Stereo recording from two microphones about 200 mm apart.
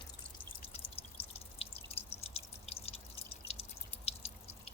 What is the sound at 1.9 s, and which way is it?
Drip, 30° left (ahead or behind).